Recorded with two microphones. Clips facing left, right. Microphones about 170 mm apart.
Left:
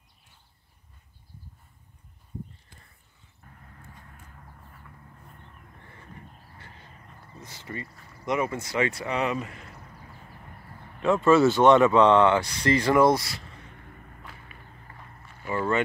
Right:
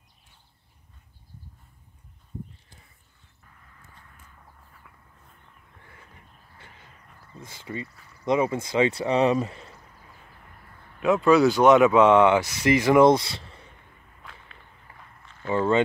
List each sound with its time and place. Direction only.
7.6 s speech: 20° right (ahead or behind)
11.1 s speech: centre (ahead or behind); by 13.6 s 30° right (ahead or behind)
14.3 s vehicle: 5° left (ahead or behind)
15.5 s a sound: 20° right (ahead or behind)